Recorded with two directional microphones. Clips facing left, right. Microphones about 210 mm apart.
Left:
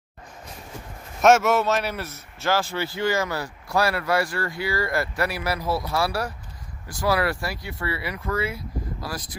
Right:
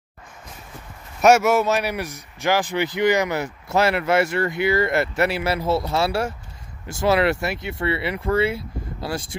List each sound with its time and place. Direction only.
1.2 s a man's voice: 10° right (ahead or behind); by 9.3 s 25° right (ahead or behind)